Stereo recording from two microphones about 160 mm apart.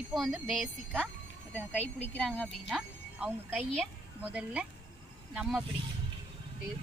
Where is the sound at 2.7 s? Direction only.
5° right (ahead or behind).